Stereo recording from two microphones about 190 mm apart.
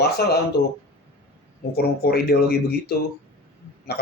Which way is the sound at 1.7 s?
55° left (ahead or behind).